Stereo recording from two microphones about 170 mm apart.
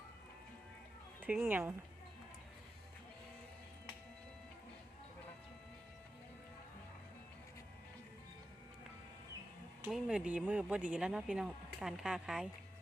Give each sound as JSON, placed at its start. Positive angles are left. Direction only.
{"t": 1.2, "sound": "speech", "side_deg": -10}
{"t": 9.9, "sound": "speech", "side_deg": -5}